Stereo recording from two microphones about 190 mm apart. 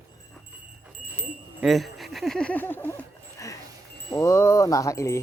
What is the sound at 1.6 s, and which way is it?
Speech, centre (ahead or behind).